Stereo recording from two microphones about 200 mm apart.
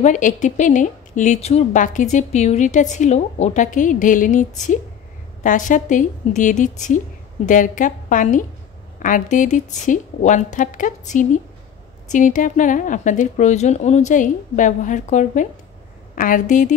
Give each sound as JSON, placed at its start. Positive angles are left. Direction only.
{"t": 0.0, "sound": "speech", "side_deg": 40}